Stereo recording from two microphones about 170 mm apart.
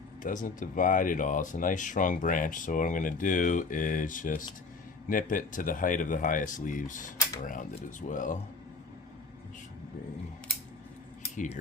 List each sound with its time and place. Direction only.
0.2 s speech: 50° left (ahead or behind)